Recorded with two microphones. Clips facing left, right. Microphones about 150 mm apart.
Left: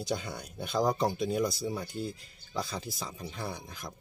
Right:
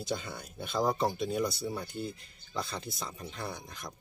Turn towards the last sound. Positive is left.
turn(degrees=0)  # may be behind; listen again after turning